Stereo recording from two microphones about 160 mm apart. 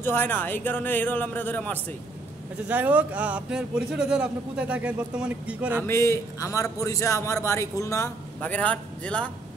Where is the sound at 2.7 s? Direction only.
10° right (ahead or behind).